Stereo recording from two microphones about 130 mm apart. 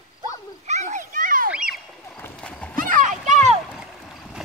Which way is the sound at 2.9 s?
80° right.